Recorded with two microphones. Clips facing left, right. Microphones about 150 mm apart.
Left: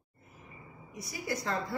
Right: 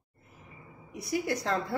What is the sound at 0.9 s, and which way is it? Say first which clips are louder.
Speech: right 6 dB; 70° right (ahead or behind).